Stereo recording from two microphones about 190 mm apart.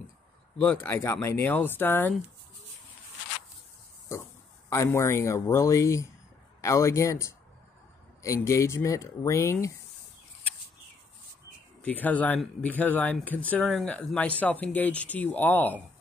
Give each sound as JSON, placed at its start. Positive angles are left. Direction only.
{"t": 0.6, "sound": "speech", "side_deg": 10}
{"t": 4.6, "sound": "speech", "side_deg": 15}
{"t": 11.8, "sound": "speech", "side_deg": 10}